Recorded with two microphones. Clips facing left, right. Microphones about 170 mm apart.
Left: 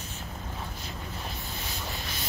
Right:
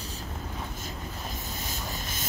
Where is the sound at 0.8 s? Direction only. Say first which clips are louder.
Right 1 dB; 45° right (ahead or behind).